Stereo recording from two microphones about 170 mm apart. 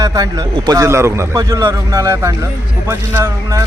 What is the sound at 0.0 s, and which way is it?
Speech, 20° right (ahead or behind).